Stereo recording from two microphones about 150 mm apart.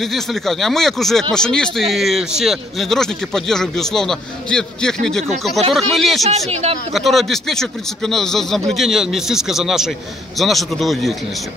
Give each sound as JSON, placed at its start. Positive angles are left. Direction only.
{"t": 0.0, "sound": "a man's voice", "side_deg": 0}
{"t": 6.2, "sound": "speech", "side_deg": -45}
{"t": 6.9, "sound": "a man's voice", "side_deg": 0}